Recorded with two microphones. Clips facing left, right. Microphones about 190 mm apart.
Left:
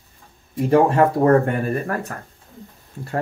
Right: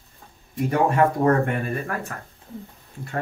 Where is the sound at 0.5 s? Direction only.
30° left (ahead or behind).